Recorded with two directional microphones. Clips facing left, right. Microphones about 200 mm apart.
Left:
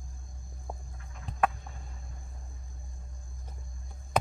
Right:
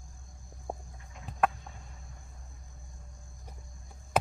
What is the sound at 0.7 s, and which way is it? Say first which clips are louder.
Music: right 4 dB; 25° right (ahead or behind).